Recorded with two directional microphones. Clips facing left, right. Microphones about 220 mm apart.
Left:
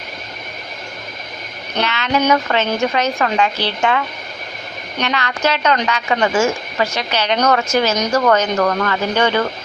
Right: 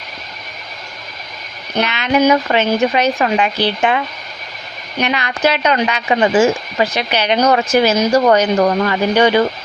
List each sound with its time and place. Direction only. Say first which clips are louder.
1.8 s a woman's voice: right 4 dB; 15° right (ahead or behind)